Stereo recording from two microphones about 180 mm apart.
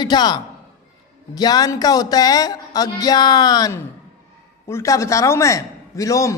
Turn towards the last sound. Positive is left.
turn(degrees=20)  # may be behind; listen again after turning